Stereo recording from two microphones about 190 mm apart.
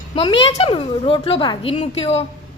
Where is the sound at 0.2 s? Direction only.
25° left (ahead or behind).